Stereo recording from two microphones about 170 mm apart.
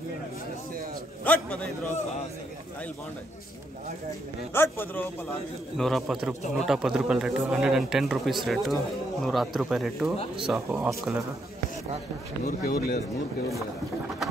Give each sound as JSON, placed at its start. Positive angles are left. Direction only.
{"t": 1.2, "sound": "a man's voice", "side_deg": 5}
{"t": 4.6, "sound": "a man's voice", "side_deg": 10}
{"t": 5.8, "sound": "a man's voice", "side_deg": 0}
{"t": 12.4, "sound": "speech", "side_deg": 55}